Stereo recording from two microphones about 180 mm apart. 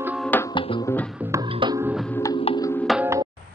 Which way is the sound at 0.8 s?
10° left (ahead or behind).